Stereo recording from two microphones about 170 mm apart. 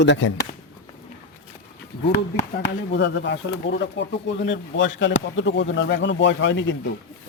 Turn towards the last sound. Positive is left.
turn(degrees=90)